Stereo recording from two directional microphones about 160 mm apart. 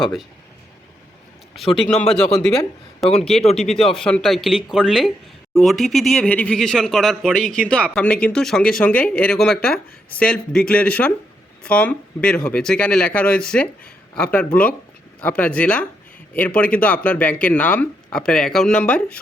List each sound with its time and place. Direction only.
0.0 s speech: centre (ahead or behind)
1.5 s a man's voice: 35° left (ahead or behind)
1.9 s speech: 5° left (ahead or behind)
3.1 s a man's voice: 40° left (ahead or behind)
3.6 s speech: centre (ahead or behind)